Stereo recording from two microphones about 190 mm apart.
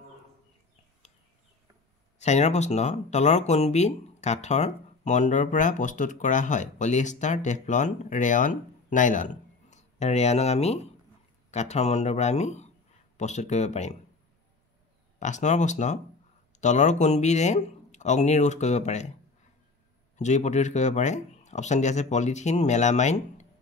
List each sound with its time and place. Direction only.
2.1 s speech: 35° left (ahead or behind)
15.1 s speech: 40° left (ahead or behind)
20.2 s speech: 40° left (ahead or behind)